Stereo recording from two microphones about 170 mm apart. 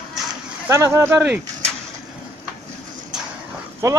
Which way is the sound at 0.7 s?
15° right (ahead or behind).